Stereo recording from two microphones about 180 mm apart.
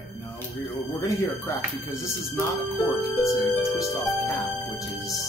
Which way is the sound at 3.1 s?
20° left (ahead or behind).